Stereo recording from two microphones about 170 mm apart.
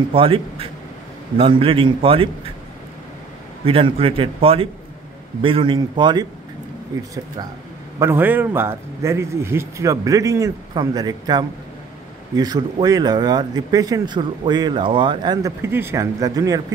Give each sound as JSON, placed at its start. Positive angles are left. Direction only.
{"t": 0.1, "sound": "a man's voice", "side_deg": -35}
{"t": 3.6, "sound": "a man's voice", "side_deg": -35}
{"t": 12.8, "sound": "speech", "side_deg": -20}